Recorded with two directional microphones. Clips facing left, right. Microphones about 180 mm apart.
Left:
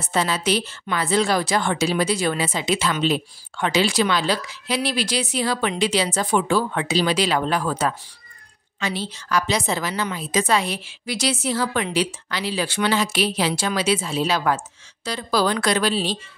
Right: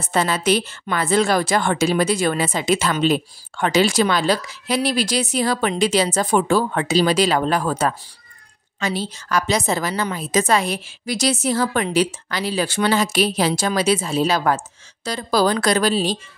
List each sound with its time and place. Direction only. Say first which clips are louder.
0.0 s a woman's voice: right 3 dB; 50° right (ahead or behind)